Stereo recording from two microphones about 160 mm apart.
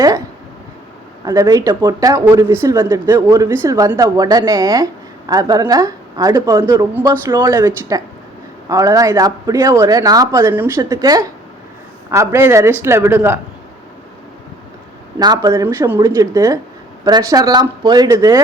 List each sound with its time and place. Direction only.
1.2 s a woman's voice: 20° right (ahead or behind)
15.2 s speech: 25° right (ahead or behind)
15.6 s a woman's voice: 15° right (ahead or behind)